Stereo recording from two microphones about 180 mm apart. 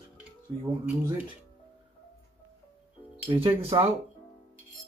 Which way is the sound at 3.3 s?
25° right (ahead or behind).